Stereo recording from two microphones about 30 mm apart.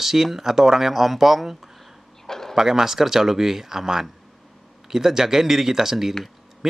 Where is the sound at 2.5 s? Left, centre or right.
Centre.